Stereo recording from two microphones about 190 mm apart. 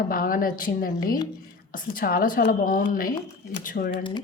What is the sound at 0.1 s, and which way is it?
Speech, 50° left (ahead or behind).